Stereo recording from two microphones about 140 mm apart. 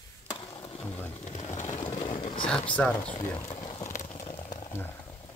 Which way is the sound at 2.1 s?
35° left (ahead or behind).